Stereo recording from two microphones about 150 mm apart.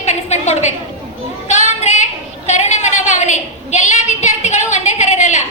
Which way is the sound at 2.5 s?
50° left (ahead or behind).